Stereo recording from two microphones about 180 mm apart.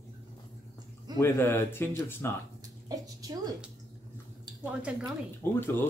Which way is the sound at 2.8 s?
20° right (ahead or behind).